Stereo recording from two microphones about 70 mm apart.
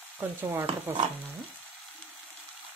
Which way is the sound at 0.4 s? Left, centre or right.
Right.